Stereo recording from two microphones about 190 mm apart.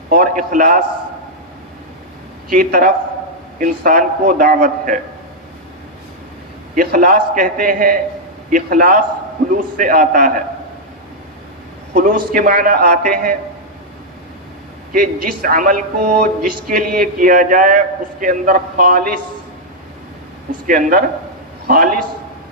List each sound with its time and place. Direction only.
0.1 s speech: 50° right (ahead or behind)
2.5 s speech: 45° right (ahead or behind)
6.7 s speech: 45° right (ahead or behind)
11.9 s speech: 45° right (ahead or behind)
14.9 s speech: 50° right (ahead or behind)
20.7 s speech: 50° right (ahead or behind)